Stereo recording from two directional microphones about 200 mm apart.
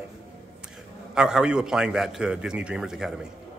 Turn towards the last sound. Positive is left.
turn(degrees=0)  # may be behind; listen again after turning